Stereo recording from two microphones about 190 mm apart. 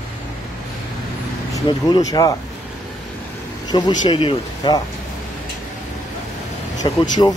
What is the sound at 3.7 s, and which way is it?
Speech, 20° left (ahead or behind).